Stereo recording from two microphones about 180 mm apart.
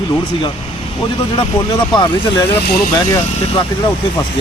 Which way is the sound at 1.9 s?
25° left (ahead or behind).